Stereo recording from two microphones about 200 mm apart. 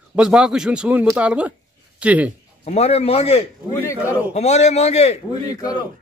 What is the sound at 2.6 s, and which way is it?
A man's voice, 30° left (ahead or behind).